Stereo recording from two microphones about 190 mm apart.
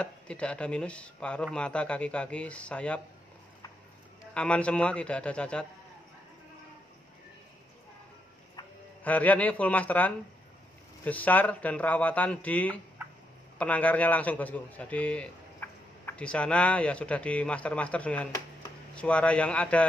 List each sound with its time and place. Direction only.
0.0 s a man's voice: 5° left (ahead or behind)
4.3 s a man's voice: 5° left (ahead or behind)
8.6 s a sound: 20° left (ahead or behind)
9.0 s a man's voice: 10° left (ahead or behind)